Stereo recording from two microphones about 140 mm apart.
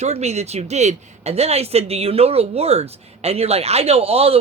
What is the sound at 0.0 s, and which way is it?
Speech, 50° right (ahead or behind).